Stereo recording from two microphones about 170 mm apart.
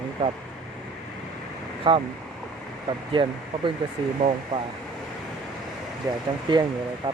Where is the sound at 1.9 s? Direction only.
30° right (ahead or behind).